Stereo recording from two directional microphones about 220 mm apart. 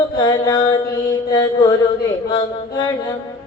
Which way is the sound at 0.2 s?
20° left (ahead or behind).